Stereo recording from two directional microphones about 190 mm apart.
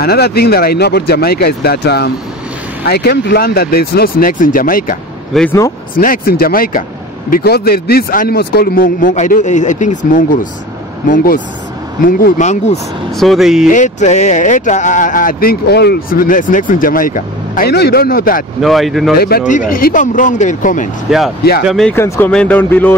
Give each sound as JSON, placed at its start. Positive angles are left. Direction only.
{"t": 0.0, "sound": "speech", "side_deg": 55}
{"t": 5.3, "sound": "speech", "side_deg": 5}
{"t": 5.9, "sound": "speech", "side_deg": 50}
{"t": 13.2, "sound": "speech", "side_deg": 0}
{"t": 13.7, "sound": "speech", "side_deg": 40}
{"t": 18.6, "sound": "speech", "side_deg": 0}
{"t": 19.1, "sound": "speech", "side_deg": 55}
{"t": 21.6, "sound": "speech", "side_deg": 0}
{"t": 21.9, "sound": "speech", "side_deg": 15}